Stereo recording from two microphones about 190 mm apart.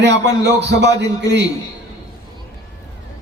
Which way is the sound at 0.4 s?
65° right (ahead or behind).